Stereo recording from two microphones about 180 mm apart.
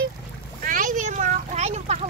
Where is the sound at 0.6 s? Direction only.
50° right (ahead or behind).